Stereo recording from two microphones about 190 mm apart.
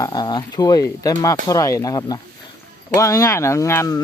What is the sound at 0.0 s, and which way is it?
A man's voice, 20° left (ahead or behind).